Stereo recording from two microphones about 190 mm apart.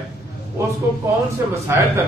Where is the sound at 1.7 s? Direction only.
15° right (ahead or behind).